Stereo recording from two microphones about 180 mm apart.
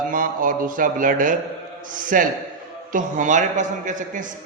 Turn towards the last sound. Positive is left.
turn(degrees=-45)  # may be behind; listen again after turning